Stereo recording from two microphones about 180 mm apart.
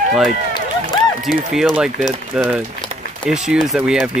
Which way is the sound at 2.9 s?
35° right (ahead or behind).